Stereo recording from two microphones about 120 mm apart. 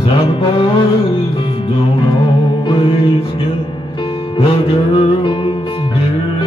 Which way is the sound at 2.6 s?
45° left (ahead or behind).